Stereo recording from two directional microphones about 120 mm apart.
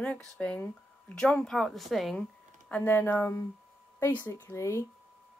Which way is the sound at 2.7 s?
15° left (ahead or behind).